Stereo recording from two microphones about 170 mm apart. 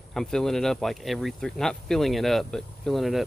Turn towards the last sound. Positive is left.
turn(degrees=0)  # may be behind; listen again after turning